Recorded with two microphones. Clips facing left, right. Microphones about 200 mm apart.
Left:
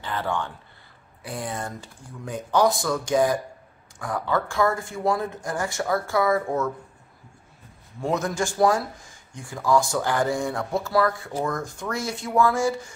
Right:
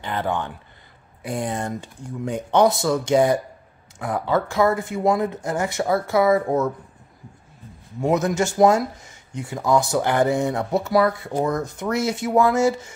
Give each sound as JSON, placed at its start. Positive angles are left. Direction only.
{"t": 0.0, "sound": "speech", "side_deg": -20}
{"t": 8.0, "sound": "speech", "side_deg": -20}